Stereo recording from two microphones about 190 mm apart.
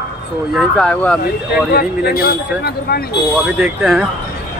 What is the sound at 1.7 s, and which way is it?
Speech, 55° left (ahead or behind).